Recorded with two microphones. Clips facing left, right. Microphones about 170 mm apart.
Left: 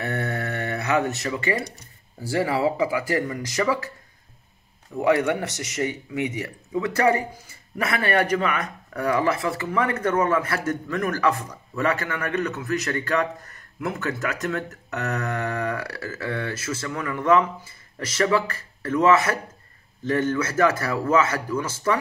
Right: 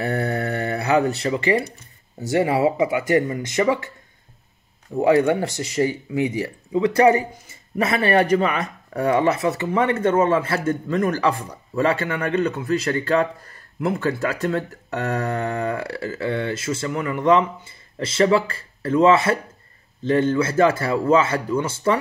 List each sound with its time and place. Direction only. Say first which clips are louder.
0.0 s a sound: right 4 dB; 30° right (ahead or behind)
2.3 s speech: right 4 dB; 25° right (ahead or behind)
4.9 s speech: right 4 dB; 30° right (ahead or behind)